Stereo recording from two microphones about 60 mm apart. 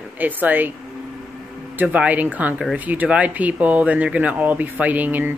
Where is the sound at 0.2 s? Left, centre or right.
Right.